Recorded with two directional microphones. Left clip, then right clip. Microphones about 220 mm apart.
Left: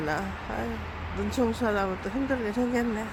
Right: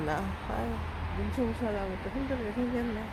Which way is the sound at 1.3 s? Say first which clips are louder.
Left 6 dB; 25° left (ahead or behind).